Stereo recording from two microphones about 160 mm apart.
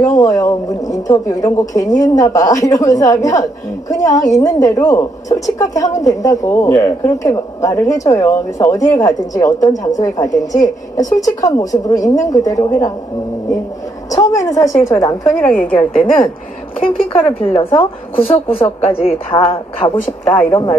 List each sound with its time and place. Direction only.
0.0 s a woman's voice: 20° left (ahead or behind)
14.1 s a woman's voice: 20° left (ahead or behind)
15.2 s a woman's voice: 5° left (ahead or behind)
16.0 s a woman's voice: 35° left (ahead or behind)
20.4 s a woman's voice: 20° left (ahead or behind)